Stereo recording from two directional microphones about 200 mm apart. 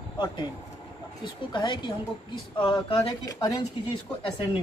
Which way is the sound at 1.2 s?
25° left (ahead or behind).